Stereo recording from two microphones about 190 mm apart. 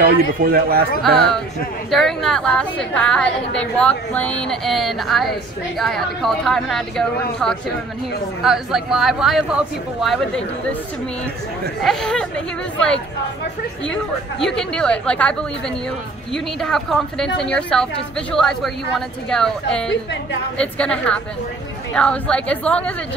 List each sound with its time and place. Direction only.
0.0 s speech: 50° right (ahead or behind)
1.1 s a woman's voice: 5° left (ahead or behind)
11.8 s a woman's voice: centre (ahead or behind)
14.4 s a woman's voice: 5° left (ahead or behind)